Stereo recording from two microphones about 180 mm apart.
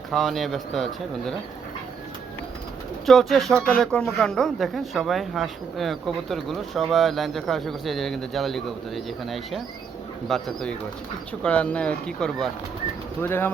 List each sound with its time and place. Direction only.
0.1 s speech: centre (ahead or behind)
3.1 s speech: centre (ahead or behind)